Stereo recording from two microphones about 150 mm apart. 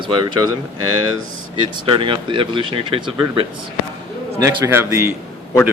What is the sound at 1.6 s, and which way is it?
Speech, 35° right (ahead or behind).